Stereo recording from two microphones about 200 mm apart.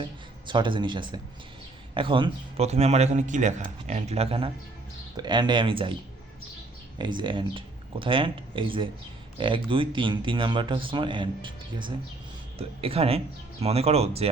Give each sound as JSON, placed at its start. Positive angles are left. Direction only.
{"t": 0.0, "sound": "a man's voice", "side_deg": -25}
{"t": 7.0, "sound": "speech", "side_deg": -25}